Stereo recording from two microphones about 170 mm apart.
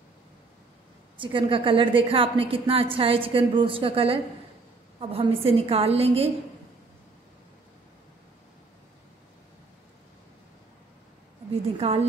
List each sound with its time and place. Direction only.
1.1 s a woman's voice: 30° right (ahead or behind)
11.8 s a woman's voice: 35° right (ahead or behind)